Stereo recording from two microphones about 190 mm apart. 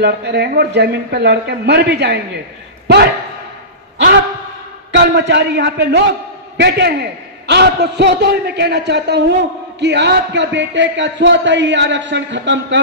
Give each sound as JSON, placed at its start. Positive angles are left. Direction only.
{"t": 0.0, "sound": "a man's voice", "side_deg": -60}
{"t": 4.9, "sound": "a man's voice", "side_deg": -65}